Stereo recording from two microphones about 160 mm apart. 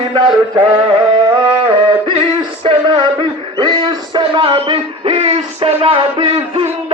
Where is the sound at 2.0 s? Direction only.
30° right (ahead or behind).